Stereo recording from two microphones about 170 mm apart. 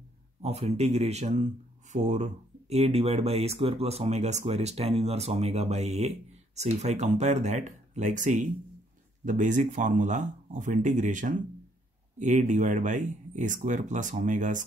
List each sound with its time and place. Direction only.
0.4 s speech: 40° right (ahead or behind)